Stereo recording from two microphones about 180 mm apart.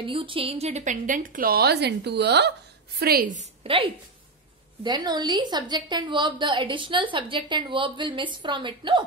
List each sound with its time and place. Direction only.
0.0 s a woman's voice: 30° right (ahead or behind); by 2.5 s 70° right (ahead or behind)
3.0 s a woman's voice: 60° right (ahead or behind)
3.3 s a woman's voice: 30° right (ahead or behind)